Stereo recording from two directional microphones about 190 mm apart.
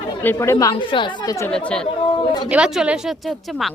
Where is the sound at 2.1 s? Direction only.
25° left (ahead or behind).